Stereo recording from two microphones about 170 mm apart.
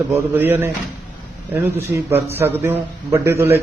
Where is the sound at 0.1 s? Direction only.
10° right (ahead or behind).